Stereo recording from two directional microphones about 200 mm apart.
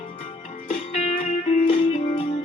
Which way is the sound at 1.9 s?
30° left (ahead or behind).